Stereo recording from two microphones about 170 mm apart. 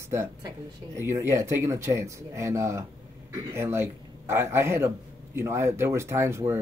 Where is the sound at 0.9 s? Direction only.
15° right (ahead or behind).